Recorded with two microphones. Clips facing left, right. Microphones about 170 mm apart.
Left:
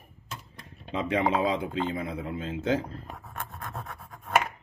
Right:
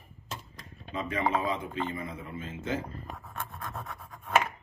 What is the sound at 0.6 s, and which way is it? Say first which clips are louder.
Speech: left 5 dB; 85° left.